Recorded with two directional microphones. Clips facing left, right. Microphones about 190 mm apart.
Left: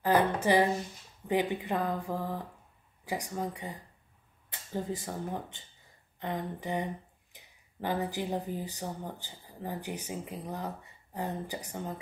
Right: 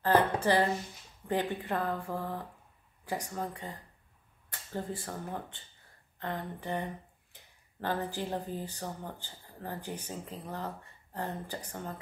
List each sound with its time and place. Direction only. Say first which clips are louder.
0.0 s a woman's voice: even; 15° left (ahead or behind)
4.7 s speech: left 3 dB; 15° left (ahead or behind)